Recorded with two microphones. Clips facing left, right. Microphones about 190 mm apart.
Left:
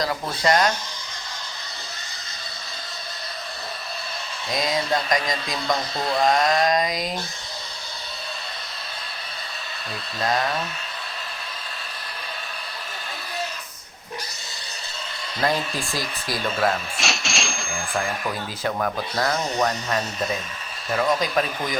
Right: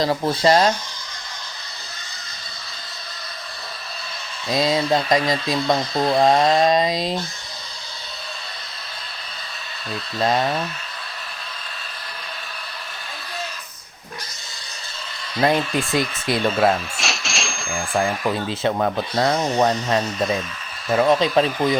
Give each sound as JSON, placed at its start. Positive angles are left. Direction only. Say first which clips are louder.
{"t": 0.0, "sound": "speech", "louder": "right 5 dB", "side_deg": -30}
{"t": 4.5, "sound": "speech", "louder": "right 5 dB", "side_deg": -25}
{"t": 10.2, "sound": "speech", "louder": "right 4 dB", "side_deg": -25}
{"t": 15.4, "sound": "speech", "louder": "right 5 dB", "side_deg": -20}
{"t": 17.0, "sound": "cash register", "louder": "even", "side_deg": 0}
{"t": 17.7, "sound": "speech", "louder": "right 6 dB", "side_deg": -30}